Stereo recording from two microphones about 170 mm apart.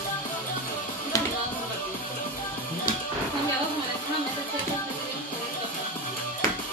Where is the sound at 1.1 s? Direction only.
20° left (ahead or behind).